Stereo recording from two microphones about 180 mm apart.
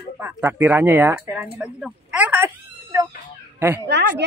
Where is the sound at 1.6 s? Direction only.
5° right (ahead or behind).